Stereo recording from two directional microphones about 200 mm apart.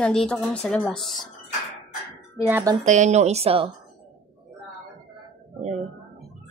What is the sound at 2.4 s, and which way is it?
Speech, 10° right (ahead or behind).